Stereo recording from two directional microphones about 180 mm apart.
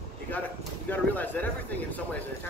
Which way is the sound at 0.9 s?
10° left (ahead or behind).